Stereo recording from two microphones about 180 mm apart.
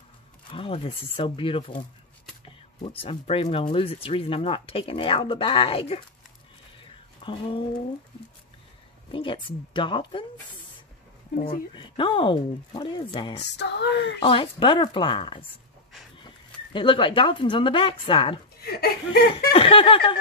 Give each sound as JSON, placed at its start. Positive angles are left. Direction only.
{"t": 0.5, "sound": "speech", "side_deg": 30}
{"t": 6.8, "sound": "a sound", "side_deg": 30}
{"t": 9.1, "sound": "speech", "side_deg": 30}
{"t": 11.7, "sound": "speech", "side_deg": 25}
{"t": 13.4, "sound": "speech", "side_deg": 70}
{"t": 14.2, "sound": "speech", "side_deg": 30}
{"t": 16.7, "sound": "speech", "side_deg": 30}
{"t": 18.6, "sound": "speech", "side_deg": 60}
{"t": 19.5, "sound": "speech", "side_deg": 30}